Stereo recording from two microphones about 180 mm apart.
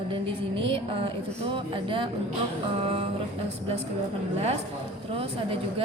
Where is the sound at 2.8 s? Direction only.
35° right (ahead or behind).